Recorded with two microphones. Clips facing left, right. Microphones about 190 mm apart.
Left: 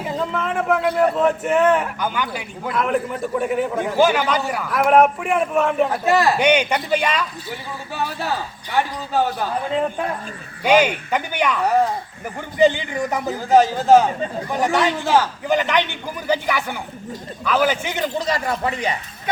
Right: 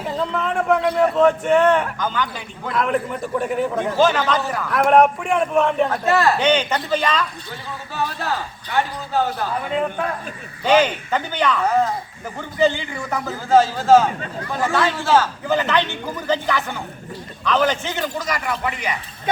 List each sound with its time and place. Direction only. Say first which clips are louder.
0.0 s speech: even; centre (ahead or behind)
3.9 s speech: left 1 dB; 10° left (ahead or behind)
5.9 s a man's voice: even; 15° left (ahead or behind)
10.6 s a man's voice: even; 15° left (ahead or behind)
18.2 s speech: left 2 dB; 30° left (ahead or behind)